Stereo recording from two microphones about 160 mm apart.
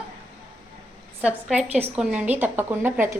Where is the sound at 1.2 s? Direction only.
5° right (ahead or behind).